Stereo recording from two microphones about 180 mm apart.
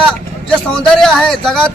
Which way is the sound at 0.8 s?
5° left (ahead or behind).